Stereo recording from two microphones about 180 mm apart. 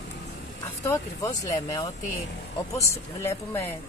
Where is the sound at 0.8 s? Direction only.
15° left (ahead or behind).